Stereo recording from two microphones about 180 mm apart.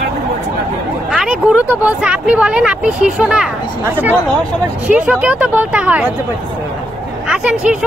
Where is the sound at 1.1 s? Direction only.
5° right (ahead or behind).